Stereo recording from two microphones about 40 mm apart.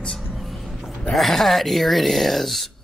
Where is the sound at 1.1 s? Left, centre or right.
Centre.